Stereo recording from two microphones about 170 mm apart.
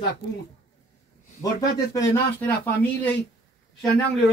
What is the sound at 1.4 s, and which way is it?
Speech, 20° left (ahead or behind).